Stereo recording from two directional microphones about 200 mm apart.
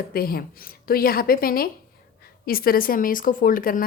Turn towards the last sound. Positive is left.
turn(degrees=45)  # may be behind; listen again after turning